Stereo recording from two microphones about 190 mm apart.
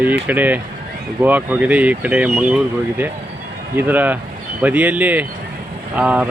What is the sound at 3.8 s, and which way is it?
Speech, 10° right (ahead or behind).